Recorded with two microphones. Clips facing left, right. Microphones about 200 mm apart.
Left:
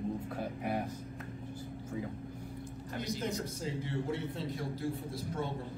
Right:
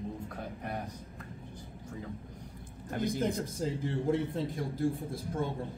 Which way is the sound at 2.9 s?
55° right (ahead or behind).